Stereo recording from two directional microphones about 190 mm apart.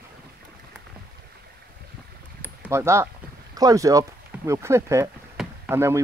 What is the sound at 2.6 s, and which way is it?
Speech, 15° right (ahead or behind).